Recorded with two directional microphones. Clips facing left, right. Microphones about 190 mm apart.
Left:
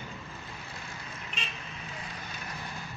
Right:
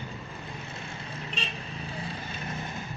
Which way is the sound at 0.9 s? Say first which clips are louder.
Right 5 dB; 30° right (ahead or behind).